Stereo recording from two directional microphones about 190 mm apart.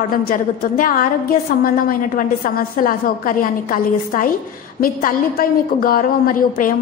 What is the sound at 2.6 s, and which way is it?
A woman's voice, 50° left (ahead or behind).